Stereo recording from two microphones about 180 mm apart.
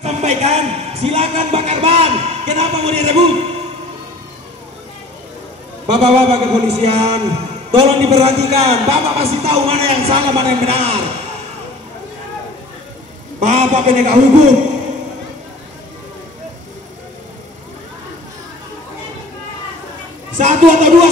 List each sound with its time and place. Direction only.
0.0 s a man's voice: 35° right (ahead or behind)
5.9 s a man's voice: 35° right (ahead or behind)
13.4 s a man's voice: 40° right (ahead or behind)
20.3 s a woman's voice: 45° right (ahead or behind)